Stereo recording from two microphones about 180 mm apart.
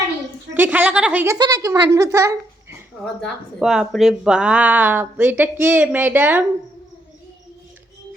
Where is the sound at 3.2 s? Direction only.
5° right (ahead or behind).